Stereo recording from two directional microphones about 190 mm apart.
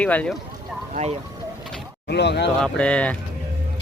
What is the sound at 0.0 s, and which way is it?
Speech, 5° left (ahead or behind).